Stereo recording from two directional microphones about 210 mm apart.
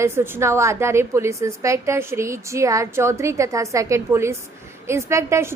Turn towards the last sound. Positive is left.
turn(degrees=-10)  # may be behind; listen again after turning